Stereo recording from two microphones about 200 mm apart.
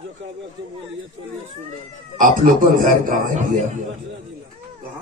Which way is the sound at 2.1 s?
45° right (ahead or behind).